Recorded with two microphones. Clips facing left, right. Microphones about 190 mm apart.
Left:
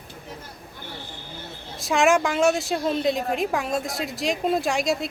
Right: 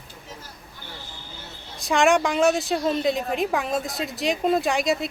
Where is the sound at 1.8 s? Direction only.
Centre (ahead or behind).